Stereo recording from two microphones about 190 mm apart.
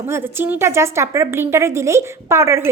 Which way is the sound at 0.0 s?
10° right (ahead or behind).